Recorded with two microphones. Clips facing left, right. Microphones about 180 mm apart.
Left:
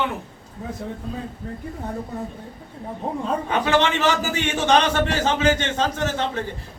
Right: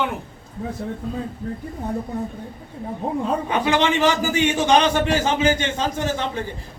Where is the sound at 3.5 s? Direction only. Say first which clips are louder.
Even; 15° right (ahead or behind).